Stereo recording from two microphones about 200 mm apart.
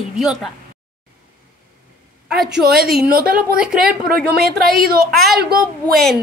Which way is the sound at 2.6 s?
50° right (ahead or behind).